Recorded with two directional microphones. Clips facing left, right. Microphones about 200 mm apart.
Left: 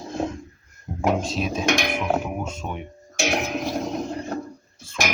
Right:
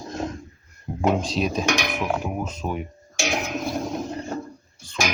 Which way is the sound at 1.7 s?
25° left (ahead or behind).